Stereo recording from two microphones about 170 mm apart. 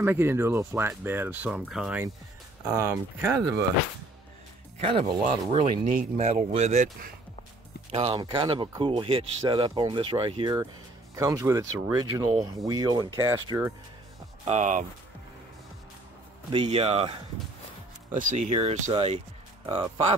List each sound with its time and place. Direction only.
0.0 s speech: 15° right (ahead or behind)
2.6 s speech: 15° right (ahead or behind)
4.7 s speech: 30° right (ahead or behind)
5.6 s speech: 45° right (ahead or behind)
7.9 s speech: 35° right (ahead or behind)
11.1 s speech: 20° right (ahead or behind)
14.4 s speech: 45° right (ahead or behind)
16.5 s speech: 30° right (ahead or behind)
18.1 s speech: 45° right (ahead or behind)
18.9 s speech: 35° right (ahead or behind)